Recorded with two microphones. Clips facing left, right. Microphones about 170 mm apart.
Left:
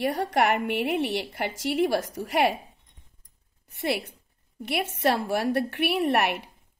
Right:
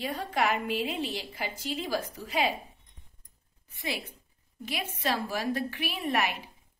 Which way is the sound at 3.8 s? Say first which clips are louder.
Left 8 dB; 70° left (ahead or behind).